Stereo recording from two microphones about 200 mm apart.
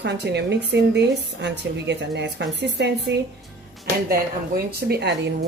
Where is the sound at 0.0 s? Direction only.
55° right (ahead or behind).